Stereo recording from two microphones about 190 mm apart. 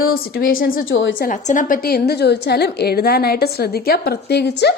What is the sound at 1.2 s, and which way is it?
A woman's voice, 40° left (ahead or behind).